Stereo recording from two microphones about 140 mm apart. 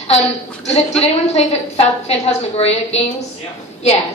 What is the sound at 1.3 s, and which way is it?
A woman's voice, 45° left (ahead or behind).